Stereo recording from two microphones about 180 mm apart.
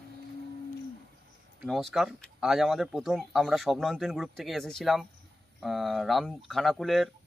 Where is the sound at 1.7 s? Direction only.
Centre (ahead or behind).